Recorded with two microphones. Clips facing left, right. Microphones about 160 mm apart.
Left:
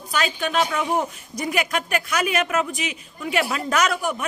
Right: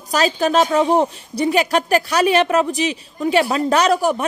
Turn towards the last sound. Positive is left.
turn(degrees=-35)  # may be behind; listen again after turning